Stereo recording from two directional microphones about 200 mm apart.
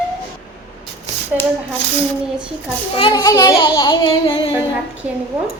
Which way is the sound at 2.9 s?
20° left (ahead or behind).